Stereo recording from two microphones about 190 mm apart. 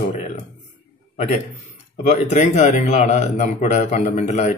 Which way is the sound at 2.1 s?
40° left (ahead or behind).